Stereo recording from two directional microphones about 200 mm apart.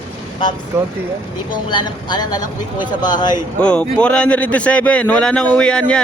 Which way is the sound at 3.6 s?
5° left (ahead or behind).